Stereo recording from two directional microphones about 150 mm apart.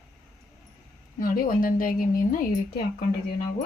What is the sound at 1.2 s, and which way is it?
Speech, 70° left (ahead or behind).